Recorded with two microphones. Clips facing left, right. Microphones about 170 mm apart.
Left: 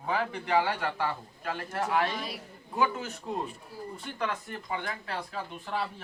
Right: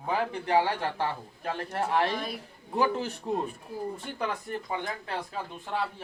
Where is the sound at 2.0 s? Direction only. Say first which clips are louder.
Right 3 dB; 55° right (ahead or behind).